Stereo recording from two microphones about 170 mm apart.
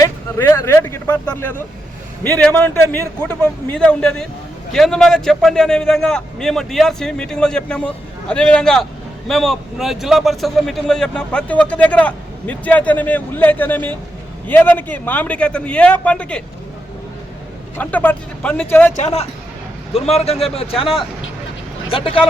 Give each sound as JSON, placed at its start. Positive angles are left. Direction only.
{"t": 0.0, "sound": "a man's voice", "side_deg": 15}
{"t": 17.7, "sound": "a man's voice", "side_deg": 10}
{"t": 18.9, "sound": "speech", "side_deg": 40}